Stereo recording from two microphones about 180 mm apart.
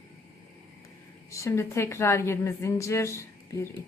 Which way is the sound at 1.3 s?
15° left (ahead or behind).